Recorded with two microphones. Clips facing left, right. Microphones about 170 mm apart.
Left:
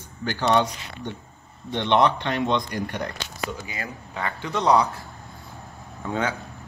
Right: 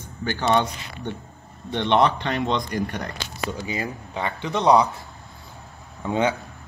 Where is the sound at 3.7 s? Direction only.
20° right (ahead or behind).